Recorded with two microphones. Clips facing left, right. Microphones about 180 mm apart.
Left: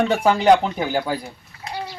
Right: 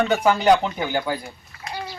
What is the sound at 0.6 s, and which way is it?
Speech, 35° left (ahead or behind).